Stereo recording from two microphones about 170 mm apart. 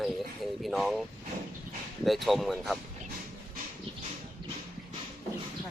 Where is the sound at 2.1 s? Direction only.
Centre (ahead or behind).